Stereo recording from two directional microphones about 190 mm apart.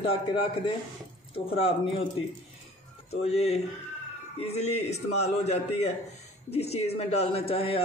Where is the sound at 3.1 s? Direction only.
35° left (ahead or behind).